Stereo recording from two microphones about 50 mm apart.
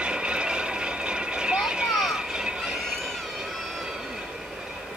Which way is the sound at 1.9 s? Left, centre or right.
Centre.